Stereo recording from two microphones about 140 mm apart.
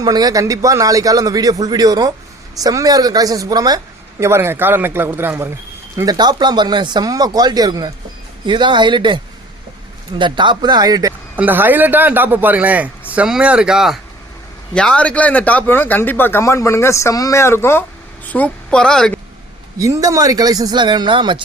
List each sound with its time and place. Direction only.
0.0 s a man's voice: 30° right (ahead or behind)
6.0 s speech: 30° right (ahead or behind)
11.3 s a man's voice: 15° right (ahead or behind)
14.8 s speech: 10° left (ahead or behind)
19.8 s speech: 25° right (ahead or behind)